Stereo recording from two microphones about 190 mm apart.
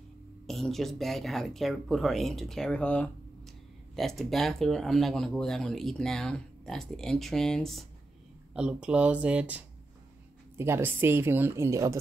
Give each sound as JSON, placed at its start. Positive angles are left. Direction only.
{"t": 0.5, "sound": "speech", "side_deg": 0}
{"t": 10.6, "sound": "speech", "side_deg": -10}